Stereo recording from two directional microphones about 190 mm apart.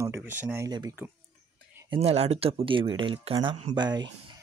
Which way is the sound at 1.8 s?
30° right (ahead or behind).